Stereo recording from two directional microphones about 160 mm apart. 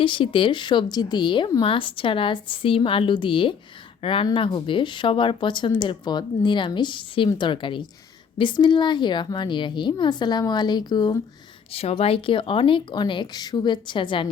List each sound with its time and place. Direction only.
0.0 s a woman's voice: 30° left (ahead or behind)
11.7 s a woman's voice: 40° left (ahead or behind)